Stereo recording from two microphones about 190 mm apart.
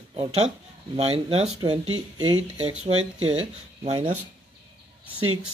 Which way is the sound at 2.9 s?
90° right.